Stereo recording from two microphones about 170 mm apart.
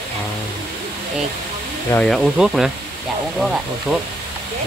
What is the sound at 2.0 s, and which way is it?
Speech, centre (ahead or behind).